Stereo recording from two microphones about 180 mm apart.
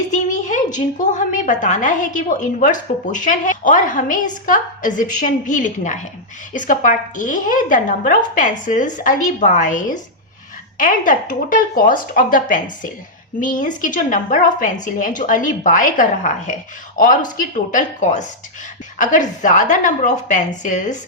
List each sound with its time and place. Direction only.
0.1 s a woman's voice: 45° left (ahead or behind)